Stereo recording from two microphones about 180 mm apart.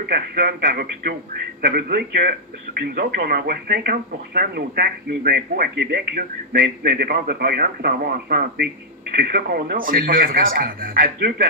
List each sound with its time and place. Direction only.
0.1 s speech: 60° right (ahead or behind)